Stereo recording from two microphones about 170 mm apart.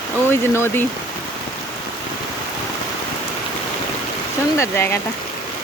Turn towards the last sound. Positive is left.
turn(degrees=15)  # may be behind; listen again after turning